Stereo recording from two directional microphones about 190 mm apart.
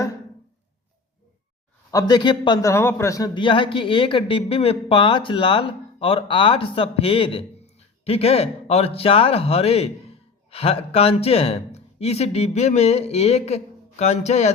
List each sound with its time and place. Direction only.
1.9 s a man's voice: 20° left (ahead or behind); by 14.5 s 35° left (ahead or behind)